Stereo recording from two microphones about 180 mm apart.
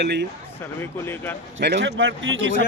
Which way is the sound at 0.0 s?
70° right (ahead or behind).